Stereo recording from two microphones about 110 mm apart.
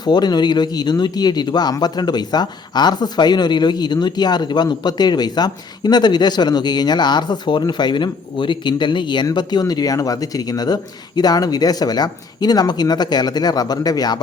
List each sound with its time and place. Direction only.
0.0 s speech: 40° left (ahead or behind)